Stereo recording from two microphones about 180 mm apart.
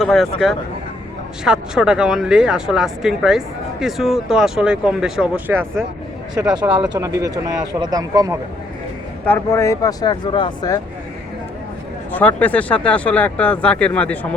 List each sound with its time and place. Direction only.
0.0 s speech: centre (ahead or behind)
6.7 s speech: 5° right (ahead or behind)
6.9 s speech: 20° right (ahead or behind)
9.2 s speech: 10° left (ahead or behind)
12.1 s speech: 10° left (ahead or behind)